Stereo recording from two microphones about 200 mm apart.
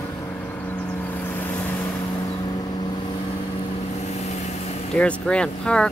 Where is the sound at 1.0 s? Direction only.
10° left (ahead or behind).